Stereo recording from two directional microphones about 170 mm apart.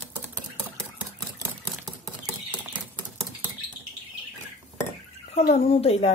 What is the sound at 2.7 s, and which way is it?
Rodents, 10° right (ahead or behind).